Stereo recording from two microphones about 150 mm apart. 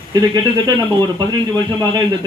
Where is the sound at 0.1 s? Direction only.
25° right (ahead or behind).